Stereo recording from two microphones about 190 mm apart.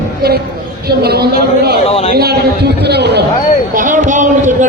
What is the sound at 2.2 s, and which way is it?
A man's voice, 55° right (ahead or behind).